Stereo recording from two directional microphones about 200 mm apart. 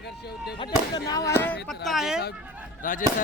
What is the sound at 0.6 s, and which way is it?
Speech, 20° left (ahead or behind).